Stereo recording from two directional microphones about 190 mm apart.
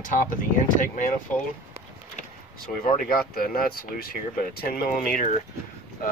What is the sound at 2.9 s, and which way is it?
Speech, 50° left (ahead or behind).